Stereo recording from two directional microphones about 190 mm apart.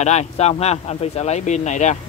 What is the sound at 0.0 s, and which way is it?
Speech, 35° left (ahead or behind).